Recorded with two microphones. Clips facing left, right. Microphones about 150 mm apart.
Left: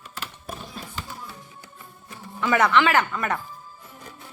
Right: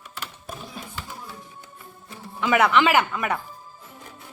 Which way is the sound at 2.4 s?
5° right (ahead or behind).